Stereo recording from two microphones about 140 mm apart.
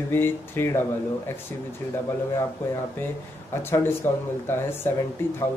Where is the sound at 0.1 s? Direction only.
15° left (ahead or behind).